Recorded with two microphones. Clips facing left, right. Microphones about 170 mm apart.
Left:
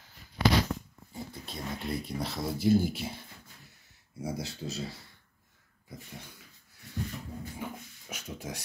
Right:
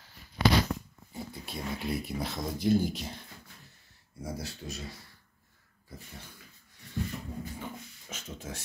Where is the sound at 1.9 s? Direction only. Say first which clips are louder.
Even; 5° right (ahead or behind).